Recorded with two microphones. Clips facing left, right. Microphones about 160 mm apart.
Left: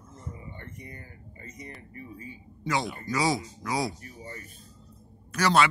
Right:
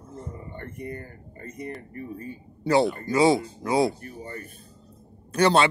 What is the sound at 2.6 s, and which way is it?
Speech, 35° right (ahead or behind).